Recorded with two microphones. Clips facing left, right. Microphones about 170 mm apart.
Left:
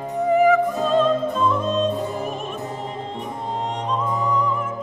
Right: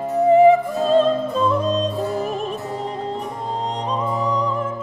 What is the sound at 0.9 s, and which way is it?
Opera, 35° right (ahead or behind).